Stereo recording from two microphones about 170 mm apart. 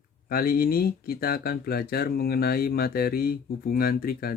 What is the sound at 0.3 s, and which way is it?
Speech, 60° left (ahead or behind).